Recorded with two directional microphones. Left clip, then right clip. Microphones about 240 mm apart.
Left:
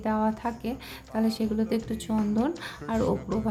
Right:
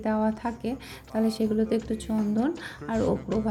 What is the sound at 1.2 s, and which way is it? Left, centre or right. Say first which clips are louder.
Speech: right 2 dB; centre.